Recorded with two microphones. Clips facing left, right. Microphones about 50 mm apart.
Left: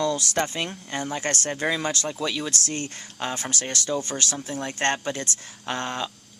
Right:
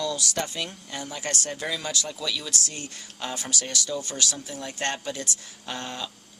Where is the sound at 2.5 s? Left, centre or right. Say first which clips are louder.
Left 4 dB; left.